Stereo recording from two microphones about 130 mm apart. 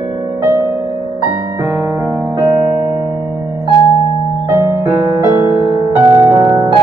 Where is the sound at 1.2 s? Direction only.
20° right (ahead or behind).